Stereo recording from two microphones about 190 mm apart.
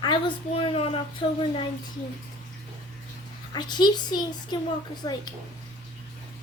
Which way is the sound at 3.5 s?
20° left (ahead or behind).